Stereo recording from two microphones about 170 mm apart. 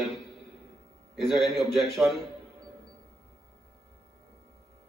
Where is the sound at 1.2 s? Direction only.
Centre (ahead or behind).